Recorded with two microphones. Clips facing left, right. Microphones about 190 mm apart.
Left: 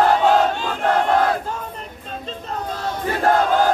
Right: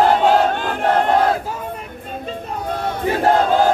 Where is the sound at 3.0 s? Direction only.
20° right (ahead or behind).